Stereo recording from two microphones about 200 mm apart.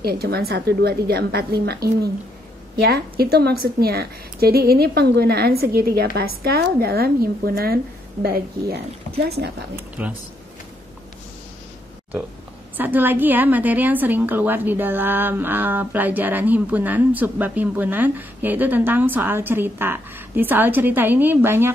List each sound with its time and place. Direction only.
0.0 s a woman's voice: 50° right (ahead or behind)
9.8 s speech: 5° right (ahead or behind)
12.7 s a woman's voice: 10° right (ahead or behind)